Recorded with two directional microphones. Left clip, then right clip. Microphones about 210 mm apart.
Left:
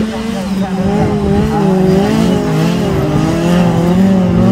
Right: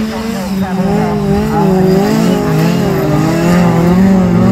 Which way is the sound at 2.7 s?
10° left (ahead or behind).